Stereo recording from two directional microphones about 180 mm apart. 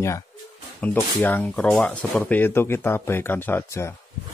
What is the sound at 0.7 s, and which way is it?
Speech, 10° left (ahead or behind).